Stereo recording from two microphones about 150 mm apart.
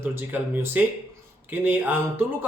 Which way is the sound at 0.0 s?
15° right (ahead or behind).